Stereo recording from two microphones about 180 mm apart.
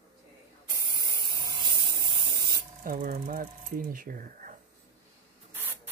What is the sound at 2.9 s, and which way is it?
Speech, 50° right (ahead or behind).